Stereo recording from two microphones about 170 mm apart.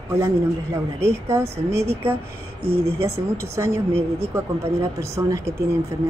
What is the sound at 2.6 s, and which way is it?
Speech, 35° right (ahead or behind).